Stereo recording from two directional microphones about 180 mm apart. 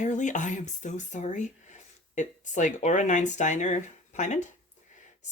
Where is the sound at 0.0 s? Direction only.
45° left (ahead or behind).